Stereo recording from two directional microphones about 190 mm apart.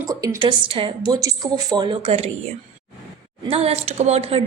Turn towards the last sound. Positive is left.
turn(degrees=-30)  # may be behind; listen again after turning